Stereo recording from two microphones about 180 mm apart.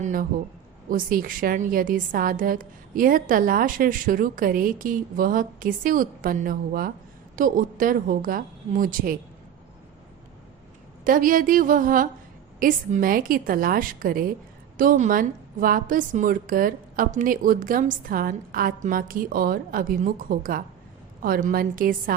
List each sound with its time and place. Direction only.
0.0 s a woman's voice: 50° right (ahead or behind)
11.0 s a woman's voice: 50° right (ahead or behind)